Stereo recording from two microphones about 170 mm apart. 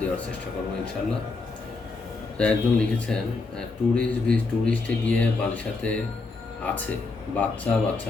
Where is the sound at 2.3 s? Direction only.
5° left (ahead or behind).